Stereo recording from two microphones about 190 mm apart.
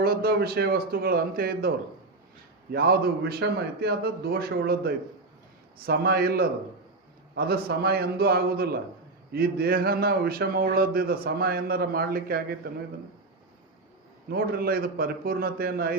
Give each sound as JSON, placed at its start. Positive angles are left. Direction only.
{"t": 0.0, "sound": "speech", "side_deg": -55}
{"t": 2.7, "sound": "a man's voice", "side_deg": -55}
{"t": 14.3, "sound": "speech", "side_deg": -55}